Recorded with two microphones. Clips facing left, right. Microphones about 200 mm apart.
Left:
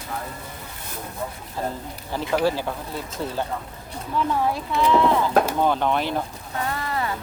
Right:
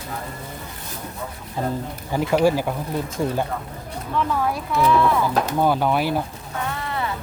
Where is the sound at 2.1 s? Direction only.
15° right (ahead or behind).